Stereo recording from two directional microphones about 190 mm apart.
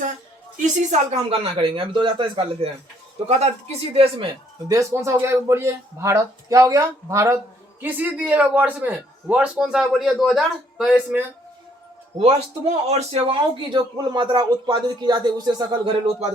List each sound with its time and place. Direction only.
0.6 s a man's voice: 35° right (ahead or behind)
4.7 s speech: 15° right (ahead or behind)
12.9 s a man's voice: 35° right (ahead or behind)